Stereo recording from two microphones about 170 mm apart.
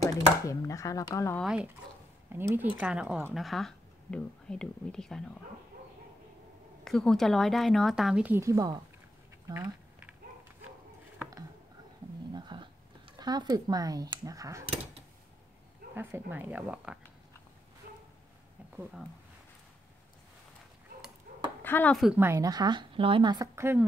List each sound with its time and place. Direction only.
0.5 s speech: 20° left (ahead or behind)
1.3 s a woman's voice: 5° right (ahead or behind)
6.8 s a woman's voice: 5° left (ahead or behind); by 8.7 s 20° right (ahead or behind)
9.5 s a sound: 10° right (ahead or behind)
12.3 s a sound: 25° right (ahead or behind)
15.9 s speech: 10° right (ahead or behind)
21.3 s a sound: 60° right (ahead or behind)
21.6 s speech: 10° left (ahead or behind)
21.9 s a woman's voice: centre (ahead or behind)
22.2 s speech: 20° right (ahead or behind)